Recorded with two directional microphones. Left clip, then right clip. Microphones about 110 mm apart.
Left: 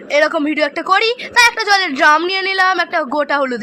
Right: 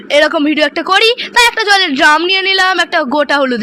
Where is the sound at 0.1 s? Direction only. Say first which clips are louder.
Right 4 dB; 40° right (ahead or behind).